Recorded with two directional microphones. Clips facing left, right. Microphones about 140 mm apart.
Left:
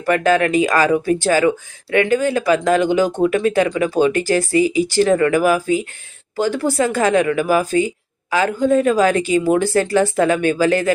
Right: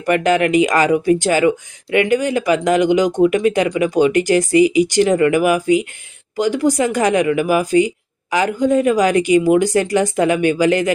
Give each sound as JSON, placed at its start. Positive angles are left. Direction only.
{"t": 0.0, "sound": "a woman's voice", "side_deg": -15}